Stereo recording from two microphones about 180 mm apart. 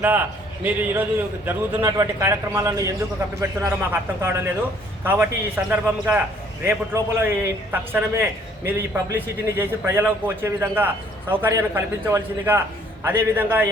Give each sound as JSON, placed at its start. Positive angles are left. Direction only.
{"t": 0.0, "sound": "a man's voice", "side_deg": -10}